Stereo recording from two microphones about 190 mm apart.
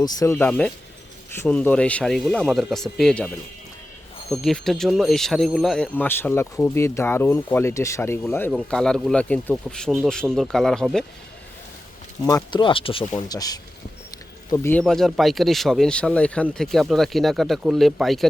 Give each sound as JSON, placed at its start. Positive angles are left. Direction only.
{"t": 0.0, "sound": "speech", "side_deg": 15}
{"t": 12.2, "sound": "speech", "side_deg": 20}